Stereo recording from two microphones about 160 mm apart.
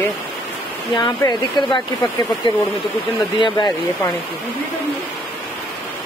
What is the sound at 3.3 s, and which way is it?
Speech, 30° left (ahead or behind).